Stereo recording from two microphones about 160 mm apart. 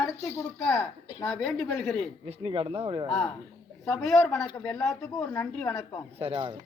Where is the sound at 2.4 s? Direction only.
35° right (ahead or behind).